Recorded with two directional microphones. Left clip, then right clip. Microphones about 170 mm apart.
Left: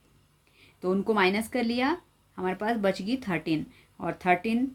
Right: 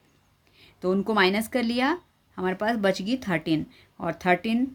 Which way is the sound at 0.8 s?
30° right (ahead or behind).